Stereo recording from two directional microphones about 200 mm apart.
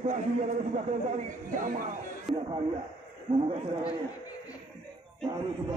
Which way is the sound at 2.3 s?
25° right (ahead or behind).